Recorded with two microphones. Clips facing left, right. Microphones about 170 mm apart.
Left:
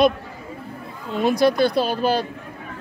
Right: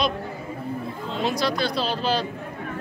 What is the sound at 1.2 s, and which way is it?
Speech, 55° left (ahead or behind).